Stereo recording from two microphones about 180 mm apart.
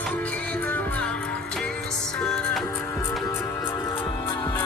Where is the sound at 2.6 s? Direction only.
15° left (ahead or behind).